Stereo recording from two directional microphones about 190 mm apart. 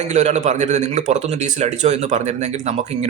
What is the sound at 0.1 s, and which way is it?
Speech, 35° right (ahead or behind).